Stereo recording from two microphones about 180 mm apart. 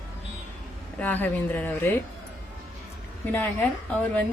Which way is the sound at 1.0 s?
10° left (ahead or behind).